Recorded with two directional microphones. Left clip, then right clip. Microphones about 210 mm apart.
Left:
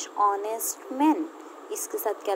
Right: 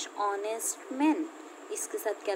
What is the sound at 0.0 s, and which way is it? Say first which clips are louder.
A woman's voice: left 7 dB; centre (ahead or behind).